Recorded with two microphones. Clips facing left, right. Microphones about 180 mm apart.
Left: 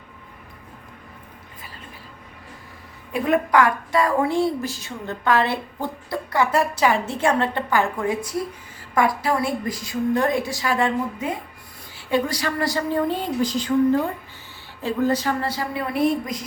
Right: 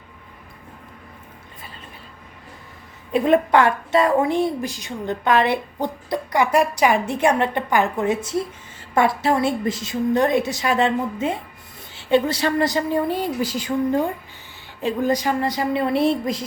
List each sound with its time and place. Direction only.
3.1 s a woman's voice: 25° right (ahead or behind)